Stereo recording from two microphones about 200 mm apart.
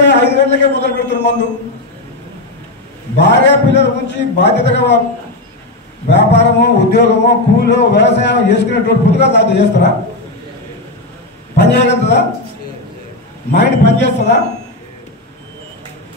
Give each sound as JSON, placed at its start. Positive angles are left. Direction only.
{"t": 0.0, "sound": "a man's voice", "side_deg": 60}
{"t": 3.2, "sound": "speech", "side_deg": 60}
{"t": 6.1, "sound": "speech", "side_deg": 60}
{"t": 11.5, "sound": "speech", "side_deg": 60}
{"t": 13.5, "sound": "speech", "side_deg": 60}